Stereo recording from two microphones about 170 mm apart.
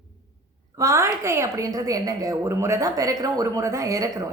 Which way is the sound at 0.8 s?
20° right (ahead or behind).